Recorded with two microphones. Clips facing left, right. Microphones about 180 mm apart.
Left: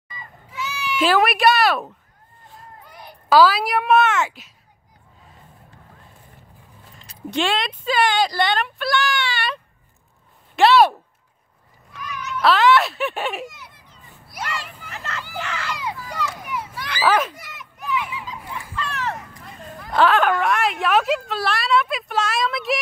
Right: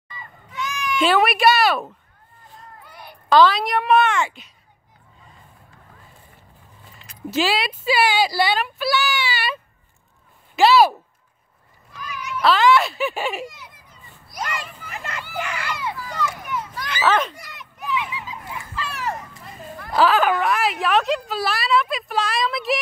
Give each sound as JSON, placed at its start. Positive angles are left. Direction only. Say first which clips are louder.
{"t": 0.1, "sound": "children playing", "louder": "right 1 dB", "side_deg": 10}
{"t": 2.8, "sound": "a sound", "louder": "even", "side_deg": 15}
{"t": 3.3, "sound": "speech", "louder": "even", "side_deg": 5}
{"t": 7.2, "sound": "speech", "louder": "right 1 dB", "side_deg": -5}
{"t": 12.1, "sound": "cat", "louder": "even", "side_deg": -10}
{"t": 12.4, "sound": "speech", "louder": "even", "side_deg": 0}
{"t": 14.5, "sound": "a sound", "louder": "right 1 dB", "side_deg": -15}
{"t": 15.3, "sound": "speech", "louder": "right 2 dB", "side_deg": -15}
{"t": 15.8, "sound": "children playing", "louder": "right 1 dB", "side_deg": 15}
{"t": 17.0, "sound": "fowl", "louder": "left 1 dB", "side_deg": 5}
{"t": 18.8, "sound": "a sound", "louder": "even", "side_deg": -10}
{"t": 19.9, "sound": "speech", "louder": "even", "side_deg": 0}